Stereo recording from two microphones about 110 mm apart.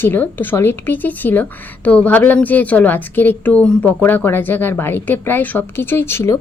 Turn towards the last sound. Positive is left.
turn(degrees=25)  # may be behind; listen again after turning